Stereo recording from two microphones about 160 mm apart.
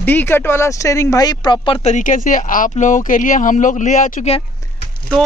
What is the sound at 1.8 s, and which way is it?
Speech, 55° left (ahead or behind).